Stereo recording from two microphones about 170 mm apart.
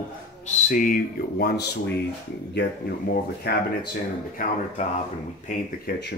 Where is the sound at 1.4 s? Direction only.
75° left (ahead or behind).